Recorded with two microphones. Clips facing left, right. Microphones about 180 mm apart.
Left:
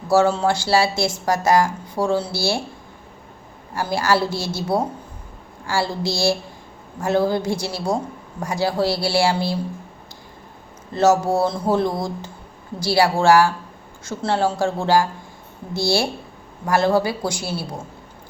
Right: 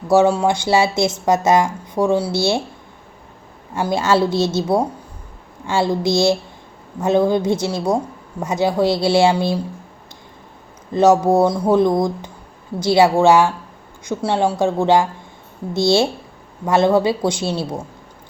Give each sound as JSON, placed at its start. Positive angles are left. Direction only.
{"t": 0.1, "sound": "a woman's voice", "side_deg": -15}
{"t": 3.8, "sound": "a woman's voice", "side_deg": -20}
{"t": 10.9, "sound": "a woman's voice", "side_deg": -15}